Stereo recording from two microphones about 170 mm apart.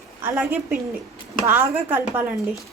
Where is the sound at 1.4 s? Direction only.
10° right (ahead or behind).